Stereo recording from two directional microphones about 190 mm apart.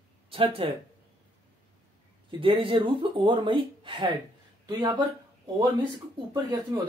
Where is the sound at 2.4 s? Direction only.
25° right (ahead or behind).